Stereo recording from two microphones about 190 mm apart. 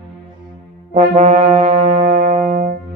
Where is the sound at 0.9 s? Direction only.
35° right (ahead or behind).